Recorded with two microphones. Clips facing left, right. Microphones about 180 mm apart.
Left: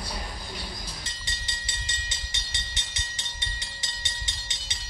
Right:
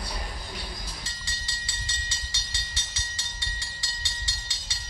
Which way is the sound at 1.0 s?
20° left (ahead or behind).